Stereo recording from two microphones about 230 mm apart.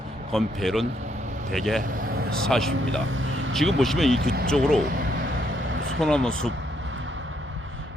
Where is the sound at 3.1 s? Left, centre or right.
Right.